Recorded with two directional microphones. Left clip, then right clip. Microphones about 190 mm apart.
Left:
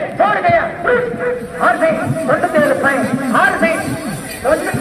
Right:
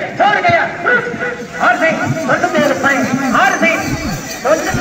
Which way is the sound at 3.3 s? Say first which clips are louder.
Right 1 dB; 20° left (ahead or behind).